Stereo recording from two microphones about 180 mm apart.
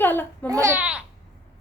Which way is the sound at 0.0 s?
10° left (ahead or behind).